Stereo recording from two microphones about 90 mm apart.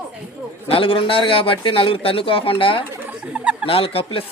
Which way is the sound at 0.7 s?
90° left.